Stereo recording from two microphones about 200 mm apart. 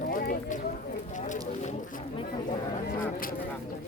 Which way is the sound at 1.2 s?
40° left (ahead or behind).